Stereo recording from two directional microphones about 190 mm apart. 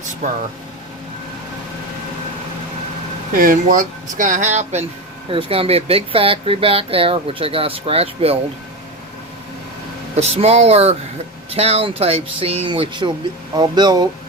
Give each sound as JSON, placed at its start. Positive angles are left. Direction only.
{"t": 3.3, "sound": "speech", "side_deg": -45}
{"t": 10.2, "sound": "speech", "side_deg": -35}